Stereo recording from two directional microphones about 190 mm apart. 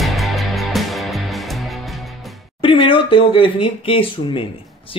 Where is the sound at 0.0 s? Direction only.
Centre (ahead or behind).